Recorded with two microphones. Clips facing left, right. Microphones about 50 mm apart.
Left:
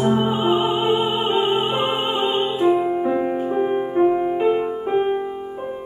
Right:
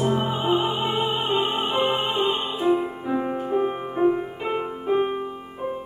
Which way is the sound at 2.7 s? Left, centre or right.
Centre.